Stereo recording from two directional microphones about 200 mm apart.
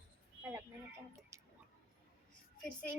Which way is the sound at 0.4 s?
15° right (ahead or behind).